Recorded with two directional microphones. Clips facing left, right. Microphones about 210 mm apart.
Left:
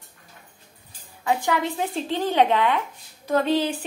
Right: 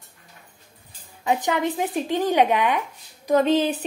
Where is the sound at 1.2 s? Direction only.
20° right (ahead or behind).